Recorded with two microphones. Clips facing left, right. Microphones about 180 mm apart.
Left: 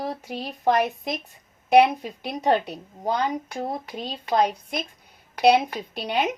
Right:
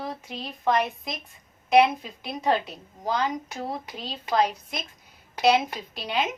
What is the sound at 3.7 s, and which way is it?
Speech, 45° left (ahead or behind).